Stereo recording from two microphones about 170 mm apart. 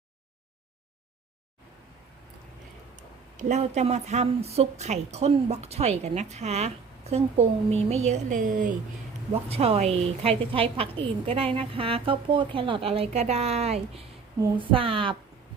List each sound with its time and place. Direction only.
2.9 s speech: 45° right (ahead or behind)
9.5 s speech: 35° right (ahead or behind)